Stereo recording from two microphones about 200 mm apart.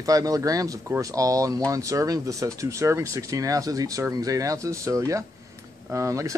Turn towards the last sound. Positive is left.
turn(degrees=-15)  # may be behind; listen again after turning